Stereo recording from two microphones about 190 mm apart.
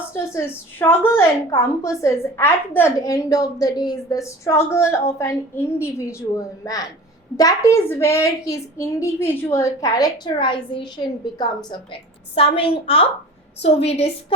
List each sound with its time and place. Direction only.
0.3 s a woman's voice: 10° left (ahead or behind); by 14.3 s 35° left (ahead or behind)